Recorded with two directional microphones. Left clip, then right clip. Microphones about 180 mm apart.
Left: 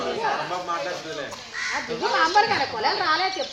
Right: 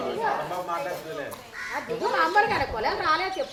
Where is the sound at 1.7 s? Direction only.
40° left (ahead or behind).